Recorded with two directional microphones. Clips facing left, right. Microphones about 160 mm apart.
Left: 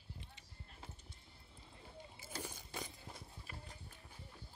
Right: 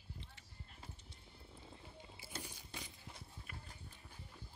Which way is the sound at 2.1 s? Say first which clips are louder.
Left 3 dB; 45° left (ahead or behind).